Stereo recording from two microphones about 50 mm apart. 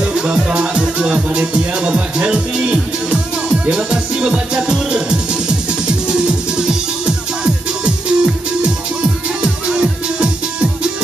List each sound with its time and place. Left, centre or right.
0.0 s music: centre